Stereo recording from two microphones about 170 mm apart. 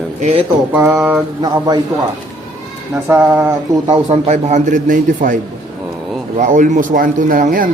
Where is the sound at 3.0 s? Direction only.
15° right (ahead or behind).